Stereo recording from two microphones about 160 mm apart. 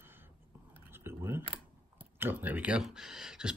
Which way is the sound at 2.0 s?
10° right (ahead or behind).